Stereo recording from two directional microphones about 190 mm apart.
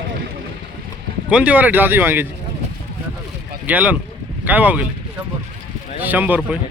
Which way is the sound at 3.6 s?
10° right (ahead or behind).